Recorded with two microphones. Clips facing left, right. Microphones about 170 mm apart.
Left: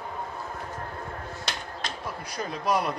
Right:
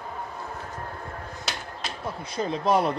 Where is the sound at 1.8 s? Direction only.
5° right (ahead or behind).